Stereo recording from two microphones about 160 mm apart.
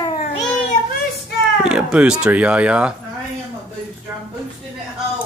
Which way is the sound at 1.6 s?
5° right (ahead or behind).